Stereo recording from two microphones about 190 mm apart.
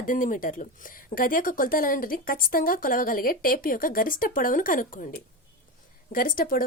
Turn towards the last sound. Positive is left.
turn(degrees=45)  # may be behind; listen again after turning